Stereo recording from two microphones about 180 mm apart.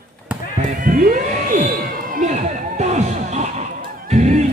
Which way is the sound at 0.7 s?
50° right (ahead or behind).